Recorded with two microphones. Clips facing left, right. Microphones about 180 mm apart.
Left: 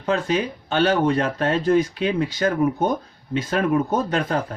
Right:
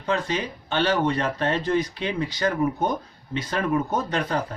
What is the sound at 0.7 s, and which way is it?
Speech, 50° left (ahead or behind).